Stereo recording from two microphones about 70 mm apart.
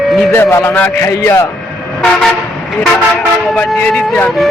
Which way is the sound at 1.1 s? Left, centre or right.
Left.